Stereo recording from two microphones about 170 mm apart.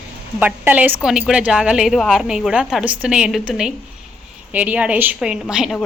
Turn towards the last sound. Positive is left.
turn(degrees=-5)  # may be behind; listen again after turning